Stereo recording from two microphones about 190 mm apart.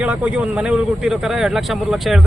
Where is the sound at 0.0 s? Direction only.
5° right (ahead or behind).